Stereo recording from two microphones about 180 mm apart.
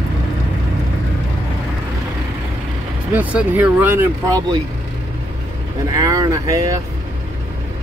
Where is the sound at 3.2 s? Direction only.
10° right (ahead or behind).